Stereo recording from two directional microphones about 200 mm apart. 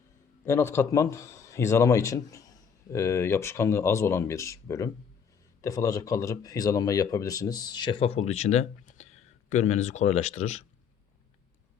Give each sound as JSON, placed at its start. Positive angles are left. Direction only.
{"t": 0.4, "sound": "speech", "side_deg": 10}